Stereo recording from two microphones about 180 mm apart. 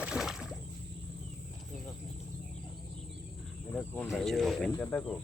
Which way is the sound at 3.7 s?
10° left (ahead or behind).